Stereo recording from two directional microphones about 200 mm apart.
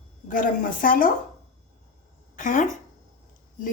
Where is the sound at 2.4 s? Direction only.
40° left (ahead or behind).